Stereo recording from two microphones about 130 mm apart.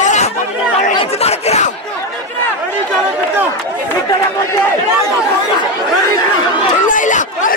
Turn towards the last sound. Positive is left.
turn(degrees=85)